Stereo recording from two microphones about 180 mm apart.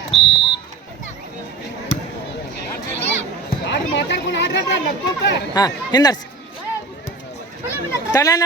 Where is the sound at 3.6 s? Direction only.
80° left.